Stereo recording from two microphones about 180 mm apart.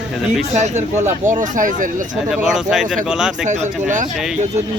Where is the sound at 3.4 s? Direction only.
40° right (ahead or behind).